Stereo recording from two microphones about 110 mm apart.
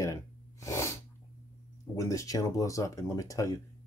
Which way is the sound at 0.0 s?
30° left (ahead or behind).